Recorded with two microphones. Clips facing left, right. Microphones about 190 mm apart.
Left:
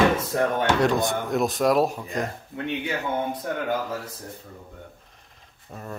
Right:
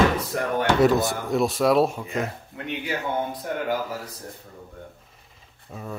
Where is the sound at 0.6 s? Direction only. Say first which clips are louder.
Right 2 dB; 5° right (ahead or behind).